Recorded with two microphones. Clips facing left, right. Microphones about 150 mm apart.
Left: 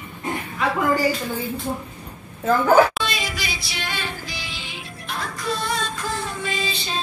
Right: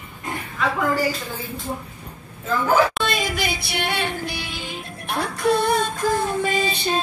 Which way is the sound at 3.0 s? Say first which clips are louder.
Right 5 dB; 50° right (ahead or behind).